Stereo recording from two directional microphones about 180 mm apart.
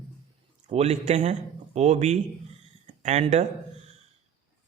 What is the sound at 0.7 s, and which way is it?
Speech, 35° right (ahead or behind).